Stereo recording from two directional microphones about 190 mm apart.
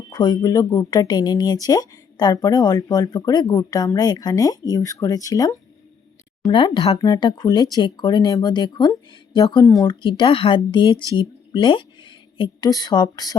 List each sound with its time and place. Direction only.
0.1 s speech: 20° left (ahead or behind)